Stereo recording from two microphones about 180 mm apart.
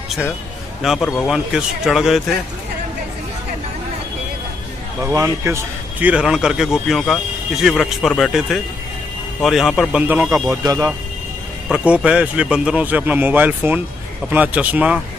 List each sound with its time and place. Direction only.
0.8 s speech: centre (ahead or behind)
5.0 s speech: 15° right (ahead or behind)
10.5 s speech: 20° right (ahead or behind)
11.7 s speech: 5° right (ahead or behind)